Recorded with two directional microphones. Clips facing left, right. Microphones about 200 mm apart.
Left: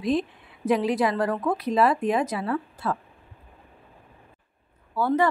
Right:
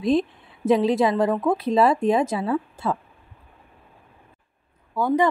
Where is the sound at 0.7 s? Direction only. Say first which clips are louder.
Right 4 dB; 25° right (ahead or behind).